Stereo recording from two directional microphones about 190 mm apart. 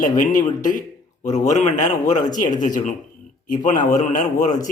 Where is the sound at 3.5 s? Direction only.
40° left (ahead or behind).